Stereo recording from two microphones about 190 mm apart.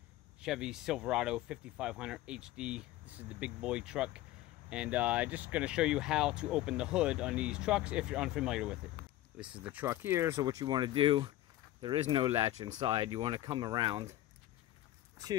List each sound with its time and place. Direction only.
0.4 s speech: 5° right (ahead or behind); by 12.9 s 35° right (ahead or behind)
12.9 s speech: 25° right (ahead or behind)